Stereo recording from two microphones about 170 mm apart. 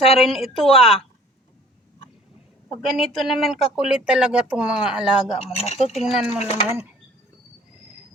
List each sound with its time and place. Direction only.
0.2 s speech: centre (ahead or behind)
2.8 s speech: centre (ahead or behind)
5.4 s speech: 40° left (ahead or behind)
5.9 s speech: centre (ahead or behind)
6.4 s speech: 40° left (ahead or behind)